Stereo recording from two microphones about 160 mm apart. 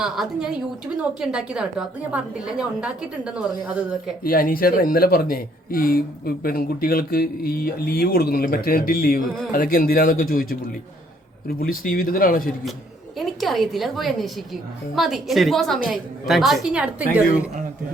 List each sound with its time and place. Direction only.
0.0 s a woman's voice: 5° right (ahead or behind)
4.2 s speech: 65° left (ahead or behind)
13.1 s a woman's voice: centre (ahead or behind)